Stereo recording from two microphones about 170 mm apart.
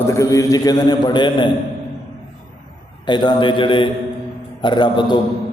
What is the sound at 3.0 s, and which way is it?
A man's voice, 25° left (ahead or behind).